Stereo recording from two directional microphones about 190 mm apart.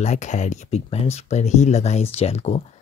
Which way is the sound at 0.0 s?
40° left (ahead or behind).